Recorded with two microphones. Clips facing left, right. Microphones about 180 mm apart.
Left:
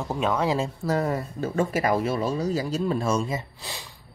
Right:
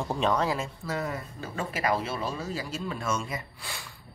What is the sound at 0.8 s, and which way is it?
Speech, 40° left (ahead or behind).